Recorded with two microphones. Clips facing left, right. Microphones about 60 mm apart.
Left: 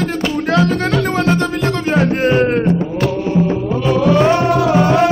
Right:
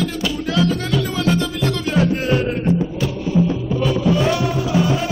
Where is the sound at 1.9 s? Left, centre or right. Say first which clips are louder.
Left 4 dB; left.